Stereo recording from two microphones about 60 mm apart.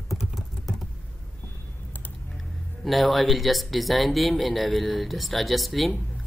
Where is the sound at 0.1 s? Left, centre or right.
Centre.